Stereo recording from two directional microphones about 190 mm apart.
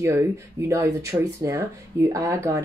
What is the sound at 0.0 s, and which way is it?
Speech, 15° right (ahead or behind).